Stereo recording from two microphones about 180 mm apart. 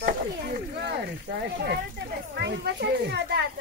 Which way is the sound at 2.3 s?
70° right (ahead or behind).